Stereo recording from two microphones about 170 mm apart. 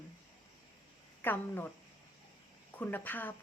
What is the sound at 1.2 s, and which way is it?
Speech, 10° left (ahead or behind).